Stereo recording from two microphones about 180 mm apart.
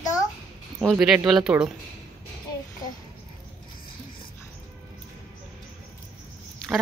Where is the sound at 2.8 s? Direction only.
20° left (ahead or behind).